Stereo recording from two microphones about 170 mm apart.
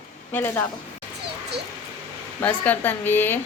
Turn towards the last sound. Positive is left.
turn(degrees=10)  # may be behind; listen again after turning